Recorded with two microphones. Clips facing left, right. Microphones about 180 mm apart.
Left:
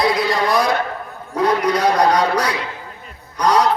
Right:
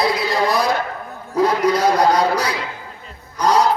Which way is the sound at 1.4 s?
25° right (ahead or behind).